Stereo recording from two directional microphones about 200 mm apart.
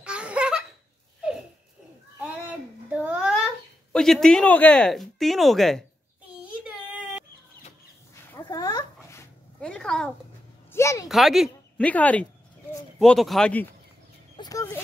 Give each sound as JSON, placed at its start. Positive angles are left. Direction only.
{"t": 0.0, "sound": "laughter", "side_deg": -5}
{"t": 2.4, "sound": "a sound", "side_deg": -5}
{"t": 6.4, "sound": "baby cry", "side_deg": -5}
{"t": 8.1, "sound": "dog", "side_deg": 10}
{"t": 9.6, "sound": "speech", "side_deg": 5}
{"t": 10.7, "sound": "speech", "side_deg": 15}
{"t": 11.1, "sound": "speech", "side_deg": 0}
{"t": 14.3, "sound": "a sound", "side_deg": 20}